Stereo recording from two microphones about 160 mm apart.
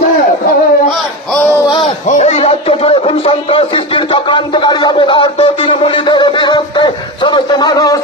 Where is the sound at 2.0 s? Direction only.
45° left (ahead or behind).